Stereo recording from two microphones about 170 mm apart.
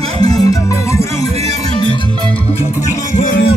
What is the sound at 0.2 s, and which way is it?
Music, 20° left (ahead or behind).